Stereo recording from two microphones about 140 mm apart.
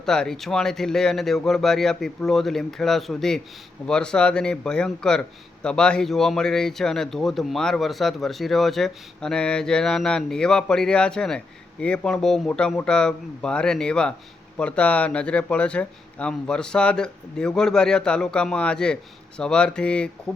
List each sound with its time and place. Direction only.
0.0 s speech: 5° left (ahead or behind)